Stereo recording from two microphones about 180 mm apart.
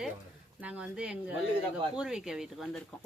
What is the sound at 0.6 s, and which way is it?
Speech, 5° right (ahead or behind).